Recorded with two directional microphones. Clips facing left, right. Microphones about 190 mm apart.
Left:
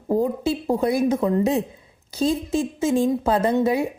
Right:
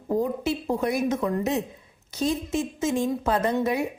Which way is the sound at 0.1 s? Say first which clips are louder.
Left 4 dB; 30° left (ahead or behind).